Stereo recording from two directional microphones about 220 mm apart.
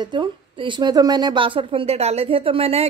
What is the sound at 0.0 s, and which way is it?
Speech, 20° right (ahead or behind).